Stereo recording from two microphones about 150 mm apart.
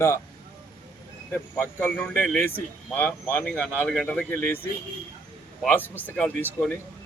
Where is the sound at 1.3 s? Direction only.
15° left (ahead or behind).